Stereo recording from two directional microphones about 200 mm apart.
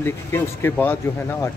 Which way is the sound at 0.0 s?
10° left (ahead or behind).